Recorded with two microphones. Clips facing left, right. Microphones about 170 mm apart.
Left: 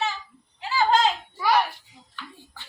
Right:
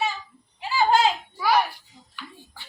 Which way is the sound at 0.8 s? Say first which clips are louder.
Right 1 dB; 10° right (ahead or behind).